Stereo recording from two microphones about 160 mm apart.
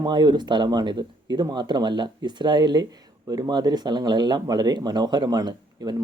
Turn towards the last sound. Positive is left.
turn(degrees=-25)  # may be behind; listen again after turning